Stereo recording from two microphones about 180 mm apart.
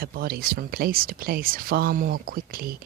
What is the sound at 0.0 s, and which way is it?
Speech, 55° right (ahead or behind).